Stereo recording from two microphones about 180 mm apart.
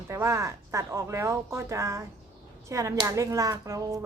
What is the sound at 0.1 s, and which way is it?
A woman's voice, 15° right (ahead or behind).